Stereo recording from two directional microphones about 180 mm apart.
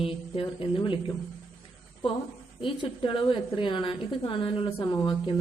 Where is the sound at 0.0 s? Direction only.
30° left (ahead or behind).